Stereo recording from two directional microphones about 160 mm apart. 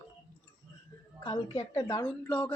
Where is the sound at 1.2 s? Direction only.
35° left (ahead or behind).